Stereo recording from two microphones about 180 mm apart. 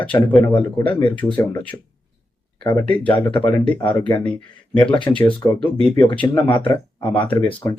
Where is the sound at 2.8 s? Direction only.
10° left (ahead or behind).